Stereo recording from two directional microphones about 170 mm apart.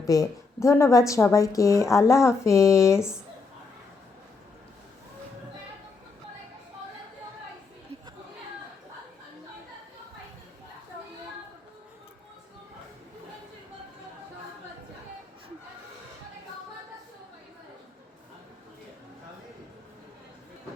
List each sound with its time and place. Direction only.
0.0 s speech: 20° left (ahead or behind)